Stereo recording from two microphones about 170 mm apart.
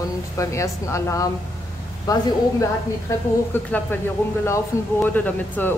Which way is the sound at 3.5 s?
10° left (ahead or behind).